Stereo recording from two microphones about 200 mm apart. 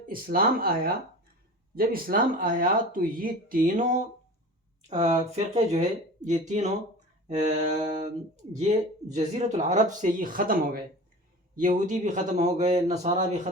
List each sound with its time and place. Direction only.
0.1 s speech: 50° right (ahead or behind)